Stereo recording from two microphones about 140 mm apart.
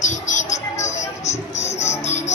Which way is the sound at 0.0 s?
60° left (ahead or behind).